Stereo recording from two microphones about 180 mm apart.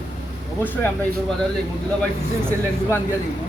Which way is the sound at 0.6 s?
10° left (ahead or behind).